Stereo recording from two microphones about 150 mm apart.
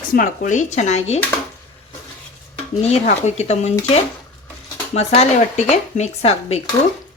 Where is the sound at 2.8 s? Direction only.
45° left (ahead or behind).